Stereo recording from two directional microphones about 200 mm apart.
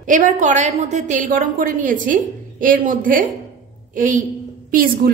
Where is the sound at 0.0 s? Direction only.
40° right (ahead or behind).